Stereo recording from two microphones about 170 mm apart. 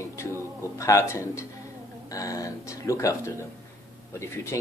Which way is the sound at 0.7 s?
20° left (ahead or behind).